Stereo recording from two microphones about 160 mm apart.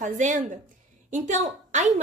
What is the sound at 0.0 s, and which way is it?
A woman's voice, 55° right (ahead or behind).